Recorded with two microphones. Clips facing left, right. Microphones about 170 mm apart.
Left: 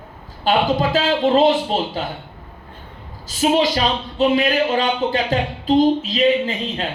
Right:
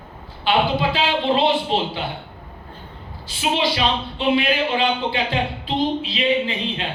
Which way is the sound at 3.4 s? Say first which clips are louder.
Left 4 dB; 45° left (ahead or behind).